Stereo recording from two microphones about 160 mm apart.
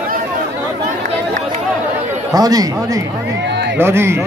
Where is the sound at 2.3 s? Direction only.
25° right (ahead or behind).